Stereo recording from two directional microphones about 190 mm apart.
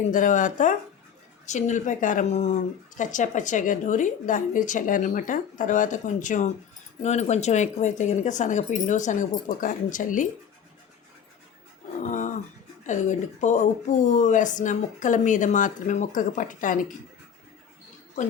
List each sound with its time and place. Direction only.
0.1 s speech: 40° left (ahead or behind)
12.0 s a sound: 40° left (ahead or behind)
12.8 s speech: 40° left (ahead or behind)